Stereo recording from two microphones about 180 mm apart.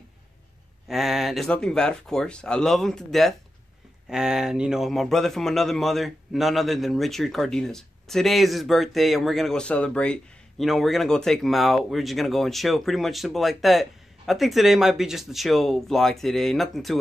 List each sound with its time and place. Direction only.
0.8 s a man's voice: centre (ahead or behind)